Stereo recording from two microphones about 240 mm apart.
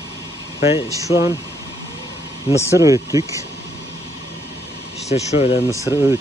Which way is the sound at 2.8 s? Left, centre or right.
Centre.